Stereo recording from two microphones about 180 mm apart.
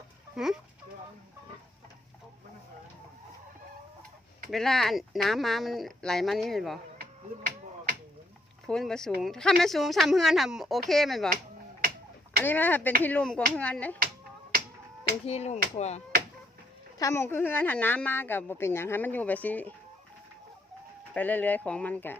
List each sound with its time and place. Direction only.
0.3 s speech: 5° right (ahead or behind)
4.5 s speech: centre (ahead or behind)
7.0 s finger snapping: 50° right (ahead or behind)
8.6 s speech: 5° left (ahead or behind)
12.5 s a woman's voice: 10° left (ahead or behind)
14.5 s finger snapping: 55° right (ahead or behind)
15.3 s speech: 35° left (ahead or behind)
17.0 s a woman's voice: 15° left (ahead or behind)
21.1 s a woman's voice: 10° left (ahead or behind)